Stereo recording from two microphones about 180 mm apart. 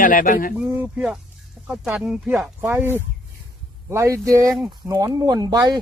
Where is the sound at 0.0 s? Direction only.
50° left (ahead or behind).